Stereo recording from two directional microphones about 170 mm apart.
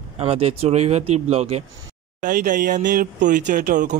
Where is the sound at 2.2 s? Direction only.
50° right (ahead or behind).